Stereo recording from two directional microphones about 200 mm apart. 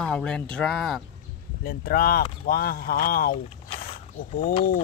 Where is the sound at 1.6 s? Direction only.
45° left (ahead or behind).